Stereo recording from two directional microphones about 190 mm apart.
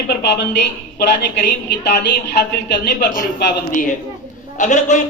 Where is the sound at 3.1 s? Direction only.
45° left (ahead or behind).